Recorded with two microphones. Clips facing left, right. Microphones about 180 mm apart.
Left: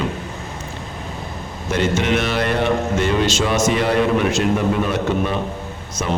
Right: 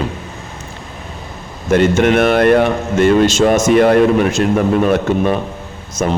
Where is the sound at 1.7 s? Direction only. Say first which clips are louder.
Right 7 dB; 55° right (ahead or behind).